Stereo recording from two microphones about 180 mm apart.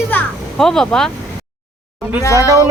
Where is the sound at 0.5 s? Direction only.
Centre (ahead or behind).